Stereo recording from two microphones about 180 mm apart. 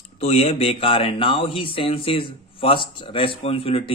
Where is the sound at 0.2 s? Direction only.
35° left (ahead or behind).